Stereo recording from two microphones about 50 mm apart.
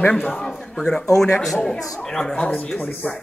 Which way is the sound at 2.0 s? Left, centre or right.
Centre.